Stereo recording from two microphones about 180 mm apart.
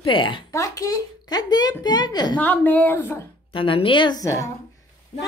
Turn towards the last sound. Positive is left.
turn(degrees=20)  # may be behind; listen again after turning